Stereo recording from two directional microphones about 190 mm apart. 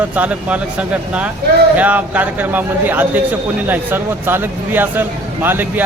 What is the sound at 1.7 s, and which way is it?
A man's voice, 10° right (ahead or behind).